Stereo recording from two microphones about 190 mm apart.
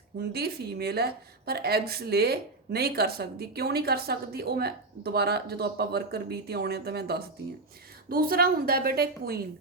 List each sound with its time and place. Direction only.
0.2 s a woman's voice: 55° right (ahead or behind)